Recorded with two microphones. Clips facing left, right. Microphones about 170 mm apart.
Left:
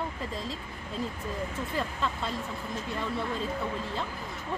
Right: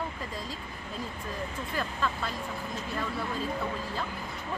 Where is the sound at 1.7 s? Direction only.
25° left (ahead or behind).